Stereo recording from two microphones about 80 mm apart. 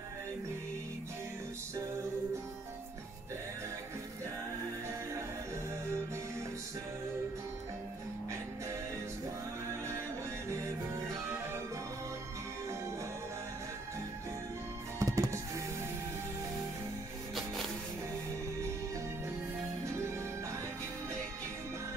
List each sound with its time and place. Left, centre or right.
10.5 s music: right
15.0 s music: right